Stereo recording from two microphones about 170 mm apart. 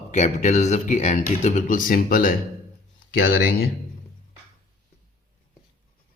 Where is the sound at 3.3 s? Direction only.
70° left (ahead or behind).